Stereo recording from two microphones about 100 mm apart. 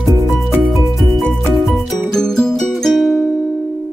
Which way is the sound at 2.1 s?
5° left (ahead or behind).